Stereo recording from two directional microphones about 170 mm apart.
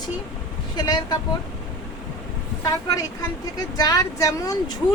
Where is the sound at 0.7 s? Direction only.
25° left (ahead or behind).